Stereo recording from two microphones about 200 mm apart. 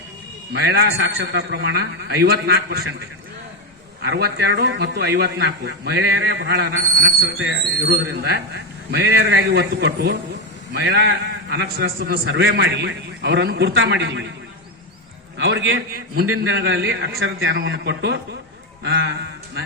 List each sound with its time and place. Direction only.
0.5 s a man's voice: 55° right (ahead or behind)
4.0 s a man's voice: 55° right (ahead or behind)
7.8 s a man's voice: 55° right (ahead or behind)
12.2 s a man's voice: 65° right (ahead or behind)
15.4 s a man's voice: 70° right (ahead or behind)
16.2 s a man's voice: 90° right; by 19.1 s 65° right (ahead or behind)